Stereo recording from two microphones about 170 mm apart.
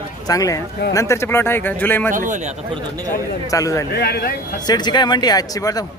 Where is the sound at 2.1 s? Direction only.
50° right (ahead or behind).